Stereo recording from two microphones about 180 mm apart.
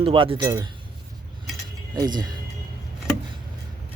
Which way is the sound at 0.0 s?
30° right (ahead or behind).